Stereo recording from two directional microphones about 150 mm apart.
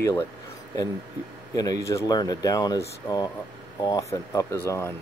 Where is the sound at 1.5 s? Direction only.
25° left (ahead or behind).